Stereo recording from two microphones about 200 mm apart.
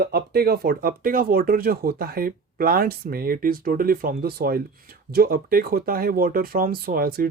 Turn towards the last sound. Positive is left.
turn(degrees=-50)  # may be behind; listen again after turning